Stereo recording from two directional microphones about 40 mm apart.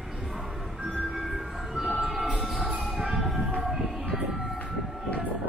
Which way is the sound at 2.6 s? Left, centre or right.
Right.